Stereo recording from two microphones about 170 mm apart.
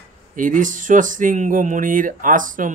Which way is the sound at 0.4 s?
50° right (ahead or behind).